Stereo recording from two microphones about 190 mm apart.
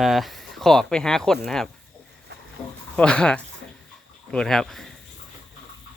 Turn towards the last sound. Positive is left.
turn(degrees=0)  # may be behind; listen again after turning